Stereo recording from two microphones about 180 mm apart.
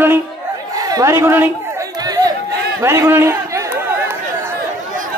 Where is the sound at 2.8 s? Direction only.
15° right (ahead or behind).